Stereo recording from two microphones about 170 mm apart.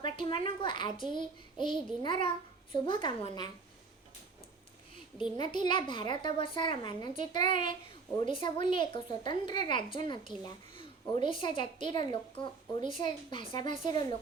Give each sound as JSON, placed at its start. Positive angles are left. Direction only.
{"t": 0.0, "sound": "a woman's voice", "side_deg": 30}
{"t": 5.4, "sound": "a woman's voice", "side_deg": 25}